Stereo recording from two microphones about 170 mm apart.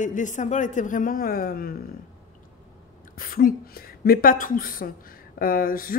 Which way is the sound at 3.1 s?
60° left (ahead or behind).